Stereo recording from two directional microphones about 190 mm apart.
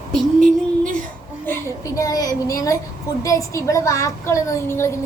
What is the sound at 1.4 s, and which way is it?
Speech, 15° left (ahead or behind).